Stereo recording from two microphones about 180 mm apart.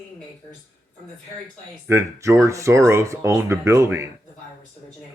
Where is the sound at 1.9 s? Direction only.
15° right (ahead or behind).